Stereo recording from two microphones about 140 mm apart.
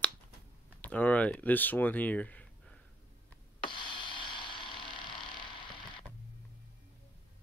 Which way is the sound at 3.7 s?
35° left (ahead or behind).